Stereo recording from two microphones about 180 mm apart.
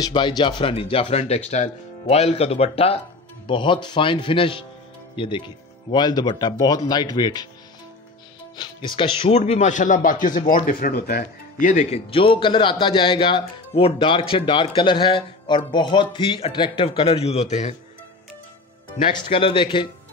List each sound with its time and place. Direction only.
0.0 s speech: 25° left (ahead or behind)
8.5 s speech: 25° left (ahead or behind)
19.2 s speech: 30° left (ahead or behind)